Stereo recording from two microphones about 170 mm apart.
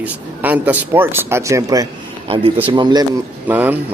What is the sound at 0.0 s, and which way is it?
Speech, 10° right (ahead or behind).